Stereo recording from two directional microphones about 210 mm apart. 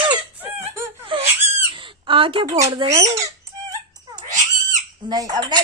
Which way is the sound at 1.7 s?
25° right (ahead or behind).